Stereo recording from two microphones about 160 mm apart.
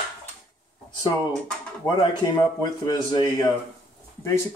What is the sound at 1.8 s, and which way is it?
A man's voice, 20° left (ahead or behind).